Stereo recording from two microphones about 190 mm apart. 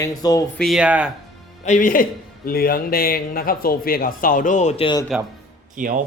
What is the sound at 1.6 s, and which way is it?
A man's voice, 40° left (ahead or behind).